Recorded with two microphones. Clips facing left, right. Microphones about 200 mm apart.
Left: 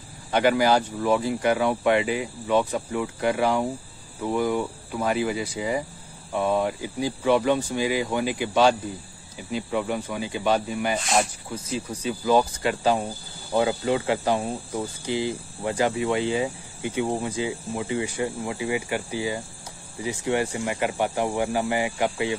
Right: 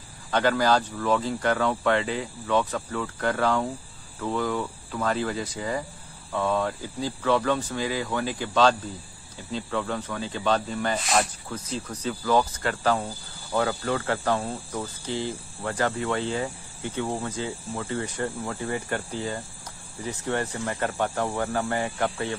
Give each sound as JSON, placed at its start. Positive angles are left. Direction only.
{"t": 0.3, "sound": "speech", "side_deg": 15}
{"t": 11.0, "sound": "speech", "side_deg": 0}